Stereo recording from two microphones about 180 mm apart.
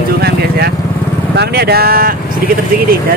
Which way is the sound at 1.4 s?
60° right (ahead or behind).